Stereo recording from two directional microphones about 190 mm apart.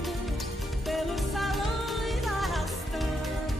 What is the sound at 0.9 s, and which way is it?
Music, centre (ahead or behind).